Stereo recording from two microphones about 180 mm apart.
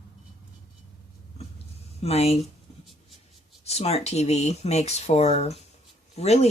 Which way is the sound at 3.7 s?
35° left (ahead or behind).